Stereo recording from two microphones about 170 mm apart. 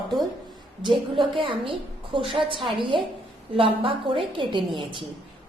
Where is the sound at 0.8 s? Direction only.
30° right (ahead or behind).